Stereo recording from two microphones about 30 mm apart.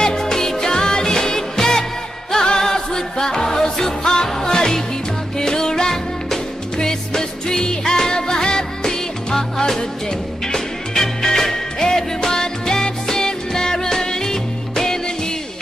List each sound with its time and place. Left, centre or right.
0.0 s music: centre